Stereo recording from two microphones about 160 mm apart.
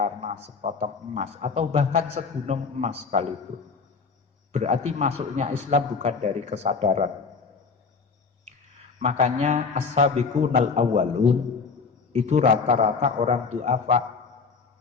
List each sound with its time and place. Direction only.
0.0 s a man's voice: 45° right (ahead or behind)
4.5 s a man's voice: 45° right (ahead or behind)
9.0 s a man's voice: 50° right (ahead or behind)